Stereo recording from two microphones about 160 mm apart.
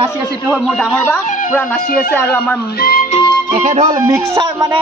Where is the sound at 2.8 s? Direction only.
70° left (ahead or behind).